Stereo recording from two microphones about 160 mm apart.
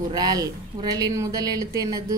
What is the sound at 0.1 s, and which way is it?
Speech, 25° right (ahead or behind).